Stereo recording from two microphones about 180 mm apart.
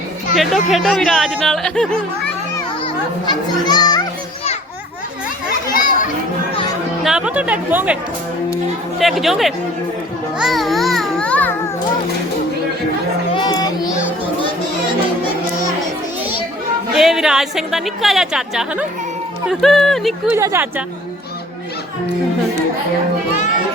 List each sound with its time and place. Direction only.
0.3 s a woman's voice: centre (ahead or behind)
2.8 s a child's voice: 25° left (ahead or behind)
5.7 s children playing: 50° left (ahead or behind)
7.0 s speech: 5° right (ahead or behind)
9.0 s a woman's voice: centre (ahead or behind)
10.3 s music: centre (ahead or behind)
13.3 s child singing: 20° left (ahead or behind)
16.9 s a woman's voice: centre (ahead or behind)
20.3 s speech: 15° right (ahead or behind)